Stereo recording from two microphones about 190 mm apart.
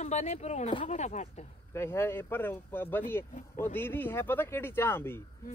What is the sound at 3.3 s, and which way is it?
Speech, 45° left (ahead or behind).